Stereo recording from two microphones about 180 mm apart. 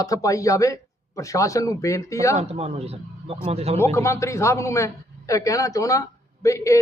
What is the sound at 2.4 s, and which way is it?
A man's voice, 35° right (ahead or behind).